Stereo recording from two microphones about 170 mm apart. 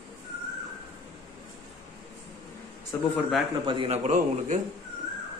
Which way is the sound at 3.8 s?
40° right (ahead or behind).